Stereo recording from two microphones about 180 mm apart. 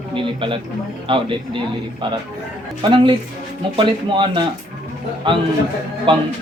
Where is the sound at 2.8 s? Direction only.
30° right (ahead or behind).